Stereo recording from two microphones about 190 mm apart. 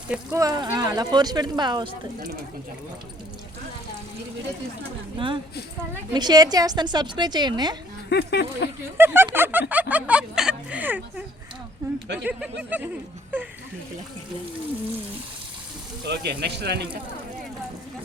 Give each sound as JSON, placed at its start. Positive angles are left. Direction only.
{"t": 0.3, "sound": "a woman's voice", "side_deg": -20}
{"t": 5.1, "sound": "a woman's voice", "side_deg": -25}
{"t": 8.1, "sound": "speech", "side_deg": 60}
{"t": 9.0, "sound": "speech", "side_deg": -10}
{"t": 12.2, "sound": "speech", "side_deg": -5}
{"t": 16.0, "sound": "speech", "side_deg": -60}